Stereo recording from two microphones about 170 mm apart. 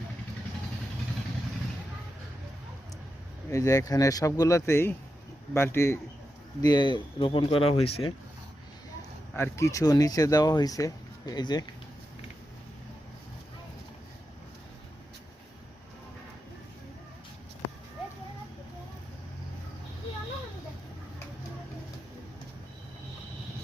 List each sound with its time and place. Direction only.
3.5 s a man's voice: 20° left (ahead or behind)
6.6 s speech: 25° left (ahead or behind)
9.3 s speech: 15° left (ahead or behind)